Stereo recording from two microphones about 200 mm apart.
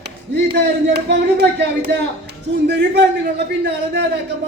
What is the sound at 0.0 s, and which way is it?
Speech, 55° right (ahead or behind).